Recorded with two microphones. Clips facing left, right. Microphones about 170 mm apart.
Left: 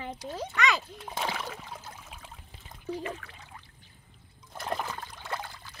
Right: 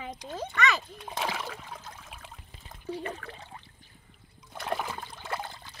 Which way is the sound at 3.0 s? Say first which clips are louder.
Even; 35° right (ahead or behind).